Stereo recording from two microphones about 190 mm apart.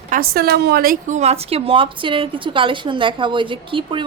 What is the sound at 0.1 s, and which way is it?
A woman's voice, 50° right (ahead or behind).